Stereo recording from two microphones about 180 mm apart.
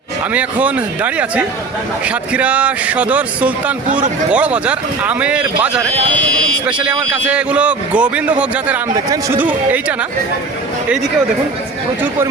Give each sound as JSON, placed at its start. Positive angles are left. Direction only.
{"t": 0.3, "sound": "a man's voice", "side_deg": -10}
{"t": 7.1, "sound": "a man's voice", "side_deg": -5}